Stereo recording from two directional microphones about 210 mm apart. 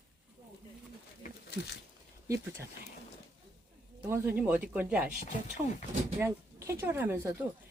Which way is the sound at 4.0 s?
10° right (ahead or behind).